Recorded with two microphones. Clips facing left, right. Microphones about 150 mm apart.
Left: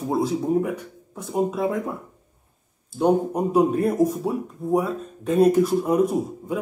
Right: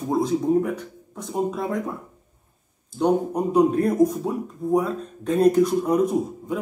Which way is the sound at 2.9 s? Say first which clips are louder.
Left 1 dB; 5° left (ahead or behind).